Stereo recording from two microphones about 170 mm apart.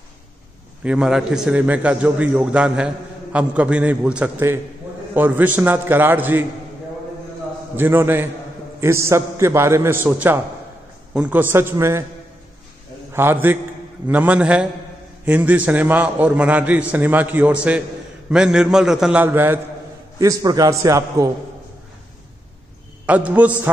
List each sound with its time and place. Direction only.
0.8 s a man's voice: 5° right (ahead or behind)
7.7 s a man's voice: 15° right (ahead or behind)
13.1 s a man's voice: 15° right (ahead or behind)
23.0 s a man's voice: 10° right (ahead or behind)